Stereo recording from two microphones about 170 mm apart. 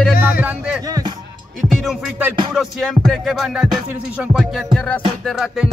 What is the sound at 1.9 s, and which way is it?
Music, 5° right (ahead or behind).